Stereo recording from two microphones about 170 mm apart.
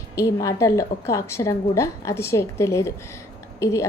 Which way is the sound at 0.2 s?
20° left (ahead or behind).